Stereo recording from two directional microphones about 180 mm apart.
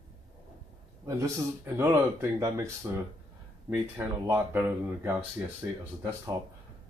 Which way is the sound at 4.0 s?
10° right (ahead or behind).